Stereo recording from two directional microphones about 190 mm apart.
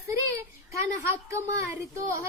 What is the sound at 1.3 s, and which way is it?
Speech, 15° right (ahead or behind).